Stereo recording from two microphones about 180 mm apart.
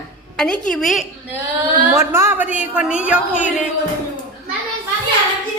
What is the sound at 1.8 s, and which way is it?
A woman's voice, 15° right (ahead or behind).